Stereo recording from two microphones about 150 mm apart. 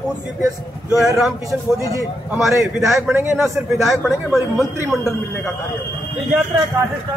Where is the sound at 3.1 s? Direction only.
15° right (ahead or behind).